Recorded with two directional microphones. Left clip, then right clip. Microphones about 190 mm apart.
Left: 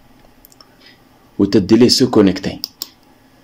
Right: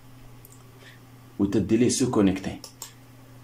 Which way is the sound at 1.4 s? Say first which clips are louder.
Left 12 dB; 45° left (ahead or behind).